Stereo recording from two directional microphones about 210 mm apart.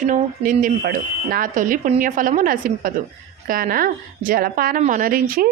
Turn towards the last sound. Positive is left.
turn(degrees=-45)  # may be behind; listen again after turning